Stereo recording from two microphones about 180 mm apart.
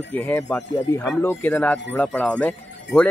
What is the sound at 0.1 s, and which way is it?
Speech, 15° left (ahead or behind).